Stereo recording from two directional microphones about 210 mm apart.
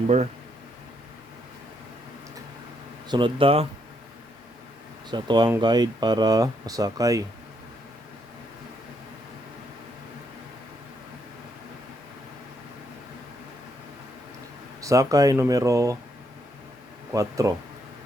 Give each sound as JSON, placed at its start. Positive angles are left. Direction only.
{"t": 3.1, "sound": "speech", "side_deg": -25}
{"t": 5.1, "sound": "speech", "side_deg": -20}
{"t": 14.8, "sound": "speech", "side_deg": -15}
{"t": 17.1, "sound": "speech", "side_deg": -15}